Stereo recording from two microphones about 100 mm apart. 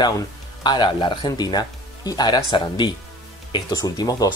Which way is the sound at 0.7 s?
50° left (ahead or behind).